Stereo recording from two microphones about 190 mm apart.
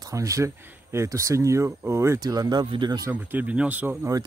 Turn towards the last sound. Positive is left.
turn(degrees=-15)  # may be behind; listen again after turning